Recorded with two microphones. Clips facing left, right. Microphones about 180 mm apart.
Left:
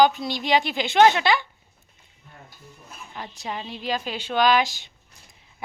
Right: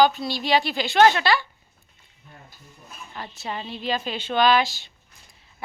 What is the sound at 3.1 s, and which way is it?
A woman's voice, 15° left (ahead or behind).